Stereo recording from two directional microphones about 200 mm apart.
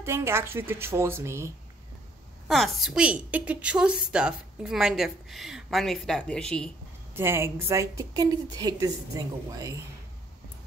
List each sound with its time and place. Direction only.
0.0 s speech: 15° right (ahead or behind)
2.4 s a woman's voice: centre (ahead or behind)
7.2 s speech: 10° right (ahead or behind)